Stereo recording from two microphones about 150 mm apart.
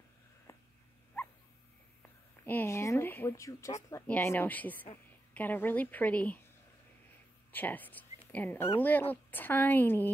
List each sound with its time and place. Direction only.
0.5 s a sound: 20° left (ahead or behind)
2.4 s a woman's voice: 15° left (ahead or behind)
7.5 s a woman's voice: 10° left (ahead or behind)